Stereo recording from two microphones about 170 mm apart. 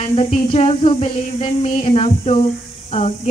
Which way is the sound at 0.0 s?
35° left (ahead or behind).